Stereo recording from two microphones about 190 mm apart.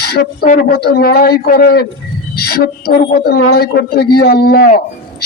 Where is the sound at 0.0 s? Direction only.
55° left (ahead or behind).